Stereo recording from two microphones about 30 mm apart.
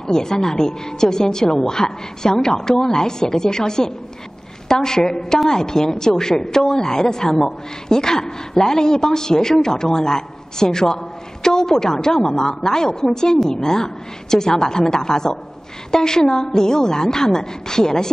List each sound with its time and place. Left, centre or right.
0.0 s a woman's voice: left